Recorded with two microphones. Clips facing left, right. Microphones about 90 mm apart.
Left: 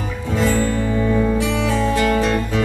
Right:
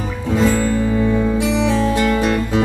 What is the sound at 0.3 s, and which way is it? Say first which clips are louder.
Music: right 3 dB; 15° right (ahead or behind).